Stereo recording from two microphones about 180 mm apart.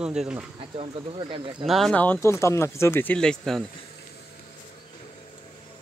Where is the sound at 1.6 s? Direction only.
Centre (ahead or behind).